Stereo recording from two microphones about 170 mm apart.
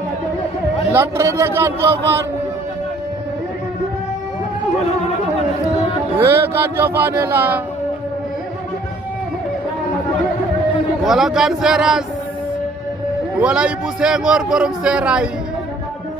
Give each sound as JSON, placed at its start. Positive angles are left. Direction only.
{"t": 0.9, "sound": "speech", "side_deg": -15}
{"t": 6.1, "sound": "speech", "side_deg": -15}
{"t": 11.1, "sound": "a man's voice", "side_deg": 0}
{"t": 13.4, "sound": "a man's voice", "side_deg": -5}